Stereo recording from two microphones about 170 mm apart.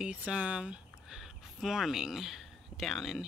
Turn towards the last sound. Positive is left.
turn(degrees=0)  # may be behind; listen again after turning